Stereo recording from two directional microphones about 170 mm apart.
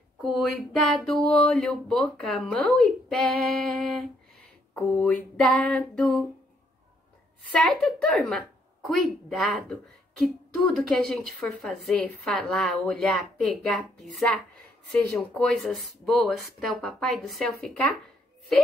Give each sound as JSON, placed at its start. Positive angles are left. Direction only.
{"t": 0.2, "sound": "a woman's voice", "side_deg": 0}
{"t": 4.7, "sound": "a woman's voice", "side_deg": 5}
{"t": 7.5, "sound": "a woman's voice", "side_deg": 5}